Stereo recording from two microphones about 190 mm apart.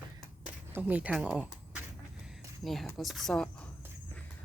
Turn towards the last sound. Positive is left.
turn(degrees=0)  # may be behind; listen again after turning